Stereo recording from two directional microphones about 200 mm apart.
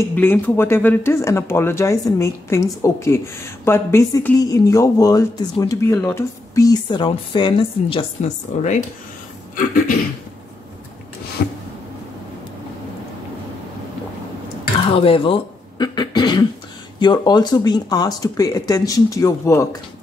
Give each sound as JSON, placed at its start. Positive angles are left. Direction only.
{"t": 0.1, "sound": "speech", "side_deg": 10}
{"t": 11.4, "sound": "a sound", "side_deg": 50}
{"t": 15.0, "sound": "speech", "side_deg": 25}